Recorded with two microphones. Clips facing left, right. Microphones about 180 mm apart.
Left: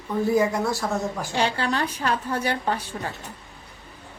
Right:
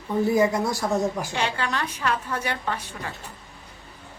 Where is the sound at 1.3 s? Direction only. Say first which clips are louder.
Left 3 dB; 35° left (ahead or behind).